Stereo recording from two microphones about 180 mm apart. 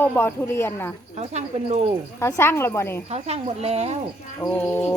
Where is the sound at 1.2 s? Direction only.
35° right (ahead or behind).